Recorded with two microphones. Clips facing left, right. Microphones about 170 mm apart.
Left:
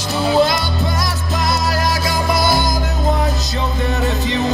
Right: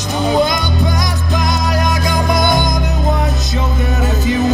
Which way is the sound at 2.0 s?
5° left (ahead or behind).